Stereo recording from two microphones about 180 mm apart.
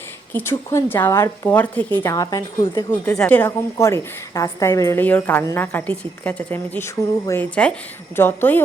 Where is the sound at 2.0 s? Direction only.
20° left (ahead or behind).